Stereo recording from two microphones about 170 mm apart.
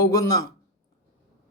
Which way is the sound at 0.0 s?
20° left (ahead or behind).